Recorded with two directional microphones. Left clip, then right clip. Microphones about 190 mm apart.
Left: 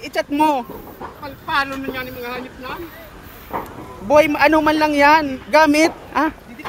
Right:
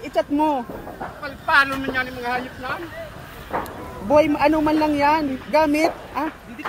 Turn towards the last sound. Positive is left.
turn(degrees=50)  # may be behind; listen again after turning